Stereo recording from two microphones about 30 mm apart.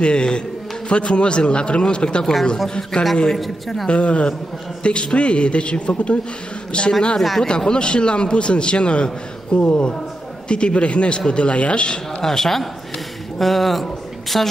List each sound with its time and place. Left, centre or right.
0.0 s a man's voice: left
2.9 s a man's voice: left
3.3 s speech: centre
3.9 s a man's voice: left
7.2 s speech: centre
7.4 s a man's voice: left
10.5 s a man's voice: left
12.2 s speech: centre